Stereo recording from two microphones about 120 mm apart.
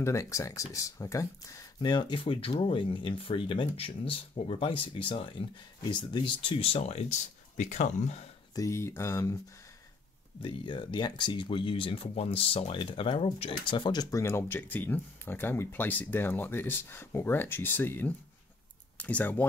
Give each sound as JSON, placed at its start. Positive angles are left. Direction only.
{"t": 0.0, "sound": "speech", "side_deg": 25}
{"t": 8.5, "sound": "speech", "side_deg": 25}
{"t": 10.4, "sound": "speech", "side_deg": 40}
{"t": 14.1, "sound": "speech", "side_deg": 20}